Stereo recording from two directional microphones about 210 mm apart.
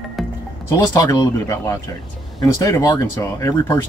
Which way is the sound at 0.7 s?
15° left (ahead or behind).